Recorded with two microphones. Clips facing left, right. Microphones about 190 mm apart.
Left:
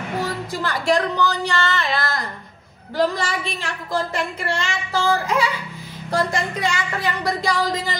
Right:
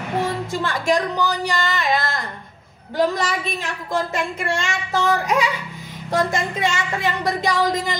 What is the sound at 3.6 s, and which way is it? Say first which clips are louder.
Speech: right 1 dB; 20° right (ahead or behind).